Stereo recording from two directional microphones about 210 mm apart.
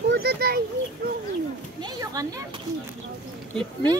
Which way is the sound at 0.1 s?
50° right (ahead or behind).